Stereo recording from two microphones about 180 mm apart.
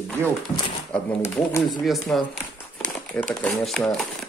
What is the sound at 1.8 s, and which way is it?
Speech, centre (ahead or behind).